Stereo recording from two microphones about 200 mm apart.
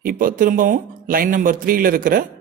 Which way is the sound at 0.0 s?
45° right (ahead or behind).